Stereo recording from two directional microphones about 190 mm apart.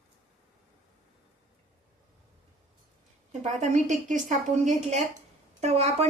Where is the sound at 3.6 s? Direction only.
40° right (ahead or behind).